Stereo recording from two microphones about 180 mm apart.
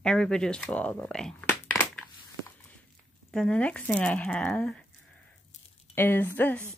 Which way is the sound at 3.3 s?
5° left (ahead or behind).